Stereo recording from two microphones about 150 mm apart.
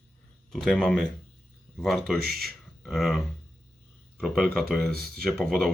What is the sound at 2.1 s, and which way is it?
Speech, 90° right.